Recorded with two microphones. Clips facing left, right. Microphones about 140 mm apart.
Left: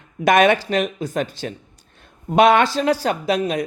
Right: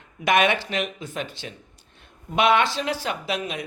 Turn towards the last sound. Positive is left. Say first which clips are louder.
# left 8 dB
turn(degrees=40)  # may be behind; listen again after turning